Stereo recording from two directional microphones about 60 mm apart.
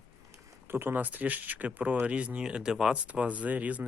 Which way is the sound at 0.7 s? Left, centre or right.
Right.